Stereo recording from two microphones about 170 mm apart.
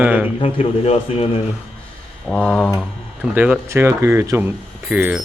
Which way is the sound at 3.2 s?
10° right (ahead or behind).